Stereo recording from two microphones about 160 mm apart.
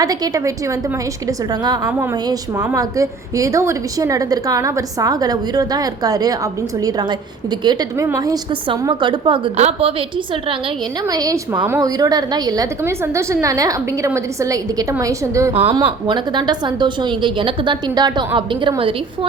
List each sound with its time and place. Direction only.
0.0 s a woman's voice: 20° right (ahead or behind)
11.0 s a woman's voice: 20° right (ahead or behind)
15.7 s a woman's voice: 30° right (ahead or behind)